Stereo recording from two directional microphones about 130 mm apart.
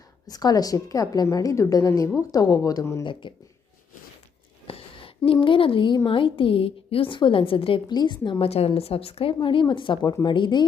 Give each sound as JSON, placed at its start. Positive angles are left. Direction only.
{"t": 0.3, "sound": "a woman's voice", "side_deg": 30}
{"t": 3.0, "sound": "a woman's voice", "side_deg": 40}
{"t": 4.6, "sound": "a sound", "side_deg": 45}
{"t": 6.1, "sound": "a woman's voice", "side_deg": 40}
{"t": 8.4, "sound": "a woman's voice", "side_deg": 50}